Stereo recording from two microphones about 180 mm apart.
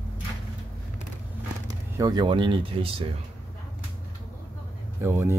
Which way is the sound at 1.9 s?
20° right (ahead or behind).